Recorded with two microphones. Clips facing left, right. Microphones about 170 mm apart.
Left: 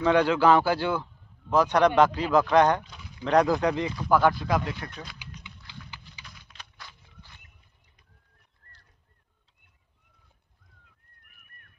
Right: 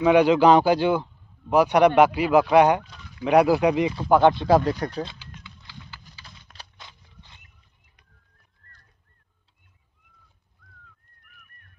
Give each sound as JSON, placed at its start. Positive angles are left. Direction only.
{"t": 0.0, "sound": "speech", "side_deg": -15}
{"t": 3.9, "sound": "speech", "side_deg": -25}
{"t": 6.8, "sound": "a sound", "side_deg": -20}